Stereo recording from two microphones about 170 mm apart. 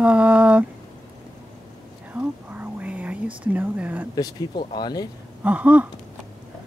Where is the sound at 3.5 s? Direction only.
10° right (ahead or behind).